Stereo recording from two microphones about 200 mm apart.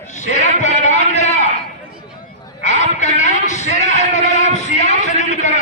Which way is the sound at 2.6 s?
35° left (ahead or behind).